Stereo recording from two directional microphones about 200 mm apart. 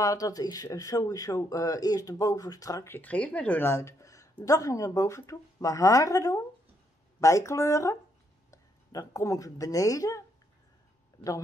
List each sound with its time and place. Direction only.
0.0 s a woman's voice: 15° left (ahead or behind)